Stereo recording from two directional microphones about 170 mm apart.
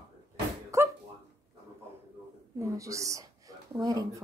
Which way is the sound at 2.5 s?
20° right (ahead or behind).